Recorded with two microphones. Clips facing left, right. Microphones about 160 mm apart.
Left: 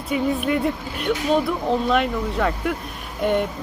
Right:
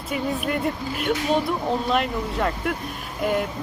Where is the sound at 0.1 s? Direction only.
Centre (ahead or behind).